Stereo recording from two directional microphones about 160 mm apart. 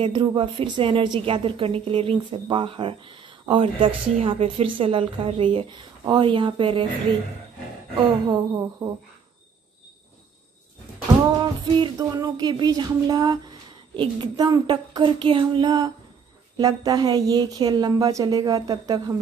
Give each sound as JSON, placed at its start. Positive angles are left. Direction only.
{"t": 0.0, "sound": "a woman's voice", "side_deg": -30}
{"t": 8.3, "sound": "a woman's voice", "side_deg": -25}
{"t": 11.7, "sound": "a woman's voice", "side_deg": -25}